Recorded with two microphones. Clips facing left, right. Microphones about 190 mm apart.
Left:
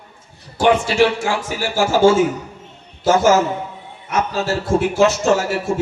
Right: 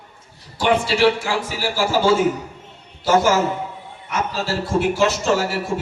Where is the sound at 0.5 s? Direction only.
50° left (ahead or behind).